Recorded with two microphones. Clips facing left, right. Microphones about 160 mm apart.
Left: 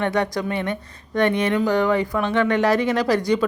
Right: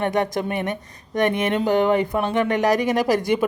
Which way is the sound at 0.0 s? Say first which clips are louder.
Even; 20° right (ahead or behind).